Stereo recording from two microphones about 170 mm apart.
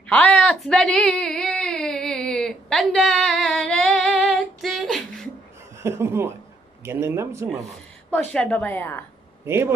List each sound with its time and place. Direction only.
0.1 s a sound: 10° left (ahead or behind)
5.8 s speech: 15° right (ahead or behind)
8.1 s a woman's voice: 5° left (ahead or behind)
9.5 s speech: 15° right (ahead or behind)